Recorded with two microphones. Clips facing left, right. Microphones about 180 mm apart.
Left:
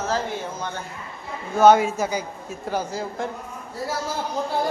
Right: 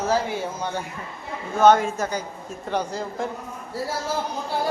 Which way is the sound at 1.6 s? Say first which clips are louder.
Left 1 dB; 10° left (ahead or behind).